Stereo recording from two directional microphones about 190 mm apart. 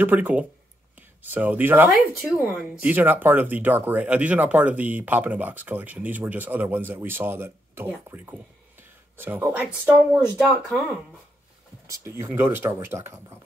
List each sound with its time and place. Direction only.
0.0 s speech: 10° right (ahead or behind)
10.3 s speech: 5° left (ahead or behind)
11.9 s speech: 15° right (ahead or behind)